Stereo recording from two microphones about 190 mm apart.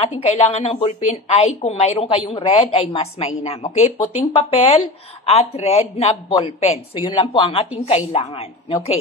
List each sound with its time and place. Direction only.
0.2 s a woman's voice: 30° left (ahead or behind)